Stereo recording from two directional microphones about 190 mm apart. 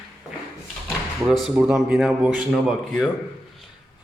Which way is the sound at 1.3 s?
Centre (ahead or behind).